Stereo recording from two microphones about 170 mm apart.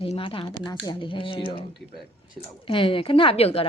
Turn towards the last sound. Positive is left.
turn(degrees=35)  # may be behind; listen again after turning